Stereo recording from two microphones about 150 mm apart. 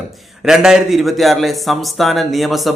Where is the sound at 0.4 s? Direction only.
5° right (ahead or behind).